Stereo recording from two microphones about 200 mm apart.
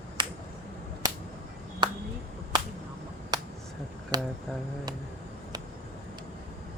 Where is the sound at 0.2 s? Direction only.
20° right (ahead or behind).